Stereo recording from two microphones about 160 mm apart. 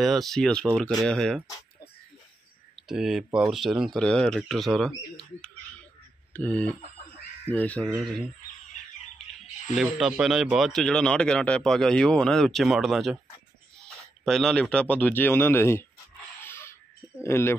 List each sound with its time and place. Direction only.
0.0 s speech: centre (ahead or behind)
2.9 s speech: 5° right (ahead or behind)
9.4 s speech: centre (ahead or behind)
14.2 s speech: centre (ahead or behind)
16.3 s a sound: 15° left (ahead or behind)
17.2 s speech: 15° left (ahead or behind)